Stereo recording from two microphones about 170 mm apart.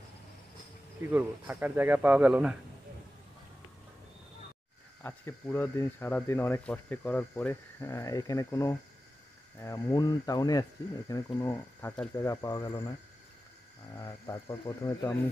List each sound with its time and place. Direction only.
1.0 s speech: 10° right (ahead or behind)
5.0 s speech: 15° left (ahead or behind)
13.9 s speech: 15° left (ahead or behind)